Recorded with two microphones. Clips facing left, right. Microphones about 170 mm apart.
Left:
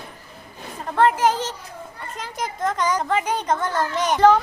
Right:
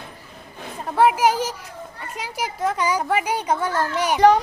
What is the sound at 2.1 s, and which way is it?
A woman's voice, 10° right (ahead or behind).